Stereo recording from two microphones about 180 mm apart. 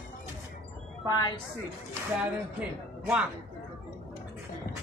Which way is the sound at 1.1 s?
25° left (ahead or behind).